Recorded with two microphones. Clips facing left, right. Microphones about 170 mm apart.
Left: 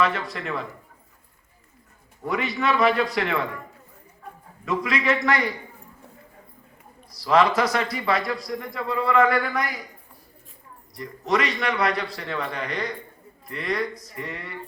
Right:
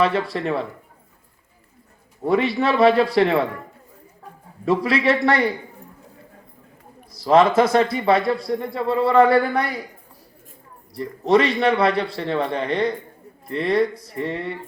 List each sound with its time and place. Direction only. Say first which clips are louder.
0.0 s a man's voice: right 5 dB; 30° right (ahead or behind)
2.2 s a man's voice: right 6 dB; 30° right (ahead or behind)
4.6 s a man's voice: right 6 dB; 30° right (ahead or behind)
7.3 s speech: right 5 dB; 25° right (ahead or behind)
10.9 s speech: right 7 dB; 30° right (ahead or behind)